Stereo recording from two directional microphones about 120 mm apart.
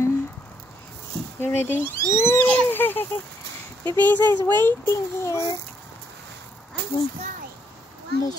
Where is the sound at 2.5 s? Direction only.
15° left (ahead or behind).